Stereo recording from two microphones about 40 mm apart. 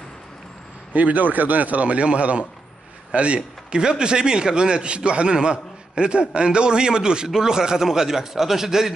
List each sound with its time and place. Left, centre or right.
0.9 s a man's voice: right; by 8.9 s centre